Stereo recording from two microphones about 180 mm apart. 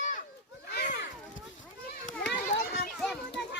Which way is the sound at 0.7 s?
60° left (ahead or behind).